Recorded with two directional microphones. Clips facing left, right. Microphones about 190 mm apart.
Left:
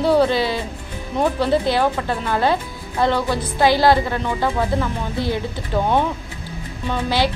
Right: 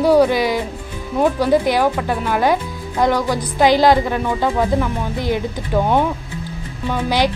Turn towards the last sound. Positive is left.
turn(degrees=-15)  # may be behind; listen again after turning